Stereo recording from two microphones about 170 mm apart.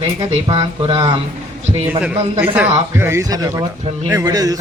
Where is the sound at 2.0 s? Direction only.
10° right (ahead or behind).